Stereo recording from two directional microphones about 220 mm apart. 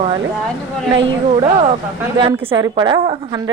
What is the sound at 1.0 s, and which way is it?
A woman's voice, 25° right (ahead or behind).